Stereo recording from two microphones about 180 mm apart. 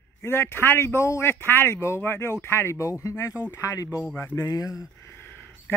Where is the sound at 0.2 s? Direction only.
15° left (ahead or behind).